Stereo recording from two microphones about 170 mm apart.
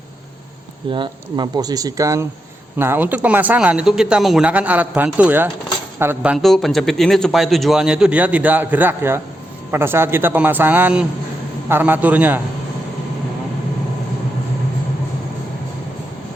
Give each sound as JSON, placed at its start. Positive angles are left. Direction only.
{"t": 0.9, "sound": "a man's voice", "side_deg": -30}